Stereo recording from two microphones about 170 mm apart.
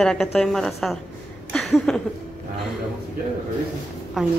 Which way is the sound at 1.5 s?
Centre (ahead or behind).